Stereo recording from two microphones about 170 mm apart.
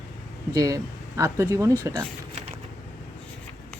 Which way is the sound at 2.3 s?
35° right (ahead or behind).